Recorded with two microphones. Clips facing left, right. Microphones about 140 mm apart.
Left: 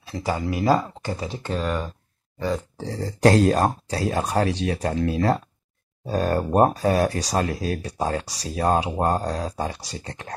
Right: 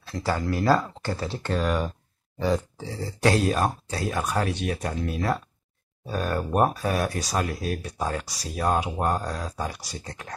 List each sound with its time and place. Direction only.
0.1 s speech: 15° left (ahead or behind)
2.8 s speech: 40° left (ahead or behind)